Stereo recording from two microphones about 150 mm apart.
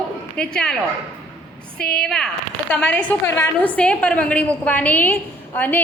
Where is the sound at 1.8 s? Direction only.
5° left (ahead or behind).